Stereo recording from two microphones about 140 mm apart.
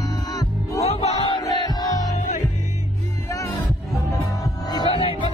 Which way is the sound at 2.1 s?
60° left (ahead or behind).